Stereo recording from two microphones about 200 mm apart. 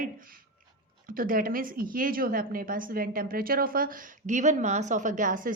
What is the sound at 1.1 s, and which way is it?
A woman's voice, 45° right (ahead or behind).